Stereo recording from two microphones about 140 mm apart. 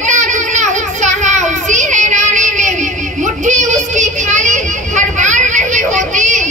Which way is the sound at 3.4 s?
60° right (ahead or behind).